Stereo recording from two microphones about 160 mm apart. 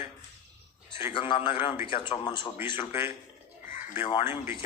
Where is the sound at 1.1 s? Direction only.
30° left (ahead or behind).